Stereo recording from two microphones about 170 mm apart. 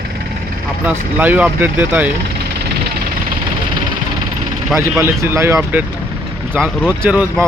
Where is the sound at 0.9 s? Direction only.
10° right (ahead or behind).